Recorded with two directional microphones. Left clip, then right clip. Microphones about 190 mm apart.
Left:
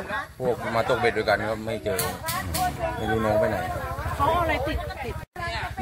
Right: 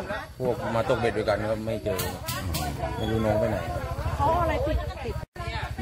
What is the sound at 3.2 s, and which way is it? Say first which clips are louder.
Speech: left 2 dB; centre (ahead or behind).